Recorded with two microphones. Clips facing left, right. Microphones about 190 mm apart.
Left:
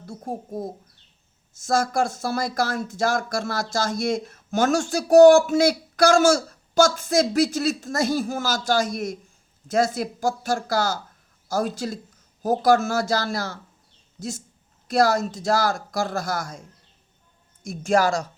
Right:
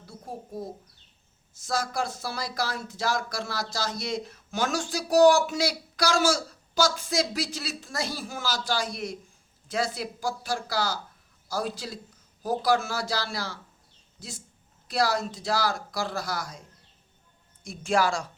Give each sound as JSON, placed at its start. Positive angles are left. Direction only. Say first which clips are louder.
{"t": 0.0, "sound": "speech", "louder": "left 7 dB", "side_deg": 45}